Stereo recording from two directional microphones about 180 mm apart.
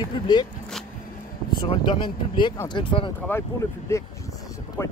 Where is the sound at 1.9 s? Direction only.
25° left (ahead or behind).